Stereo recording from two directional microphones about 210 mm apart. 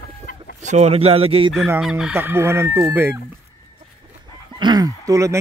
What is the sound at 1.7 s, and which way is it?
Chicken, 5° right (ahead or behind).